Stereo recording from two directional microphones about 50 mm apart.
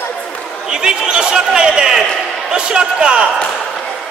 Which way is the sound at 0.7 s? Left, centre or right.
Centre.